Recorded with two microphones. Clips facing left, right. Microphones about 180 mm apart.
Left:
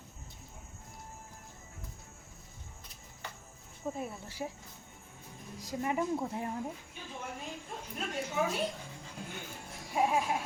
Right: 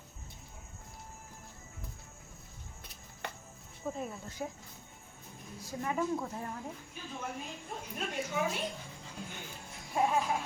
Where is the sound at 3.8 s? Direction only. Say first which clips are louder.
Left 1 dB; 20° left (ahead or behind).